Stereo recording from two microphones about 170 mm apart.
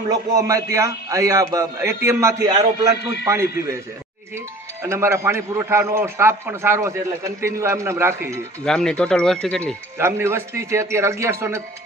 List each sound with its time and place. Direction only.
0.1 s a man's voice: 20° right (ahead or behind)
4.8 s a man's voice: 15° right (ahead or behind)
8.6 s speech: 5° left (ahead or behind)
9.9 s a man's voice: 15° right (ahead or behind)